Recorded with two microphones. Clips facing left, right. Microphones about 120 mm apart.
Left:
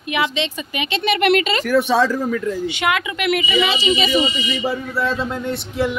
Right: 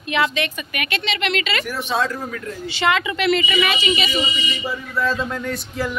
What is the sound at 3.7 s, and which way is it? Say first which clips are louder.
Speech: left 4 dB; 35° left (ahead or behind).